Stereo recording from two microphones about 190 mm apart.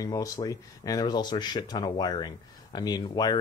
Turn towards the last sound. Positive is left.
turn(degrees=20)  # may be behind; listen again after turning